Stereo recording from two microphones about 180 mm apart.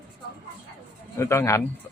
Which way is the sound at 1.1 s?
15° left (ahead or behind).